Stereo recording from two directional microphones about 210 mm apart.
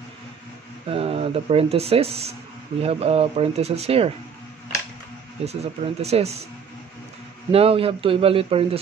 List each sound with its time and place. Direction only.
0.8 s speech: 25° right (ahead or behind)
5.4 s speech: 30° right (ahead or behind)
7.5 s speech: 25° right (ahead or behind)